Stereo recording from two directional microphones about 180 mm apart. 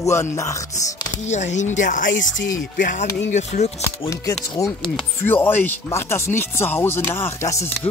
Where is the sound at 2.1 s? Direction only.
90° left.